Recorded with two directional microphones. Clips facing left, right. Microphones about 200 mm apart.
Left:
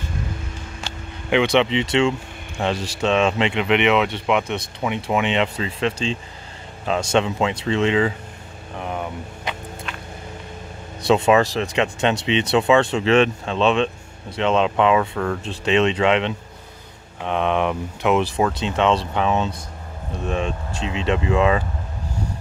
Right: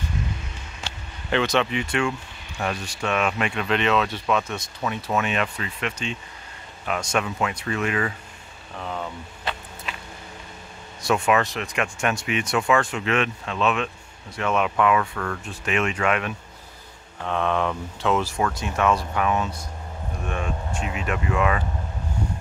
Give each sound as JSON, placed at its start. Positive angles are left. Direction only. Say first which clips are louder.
{"t": 1.3, "sound": "speech", "louder": "left 5 dB", "side_deg": 15}
{"t": 9.9, "sound": "a sound", "louder": "right 2 dB", "side_deg": 0}
{"t": 11.1, "sound": "speech", "louder": "left 5 dB", "side_deg": 25}